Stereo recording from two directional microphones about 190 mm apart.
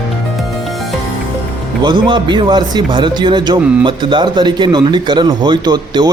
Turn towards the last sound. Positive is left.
turn(degrees=-20)  # may be behind; listen again after turning